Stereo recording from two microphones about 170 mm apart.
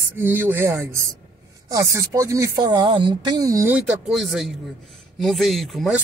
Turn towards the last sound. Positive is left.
turn(degrees=0)  # may be behind; listen again after turning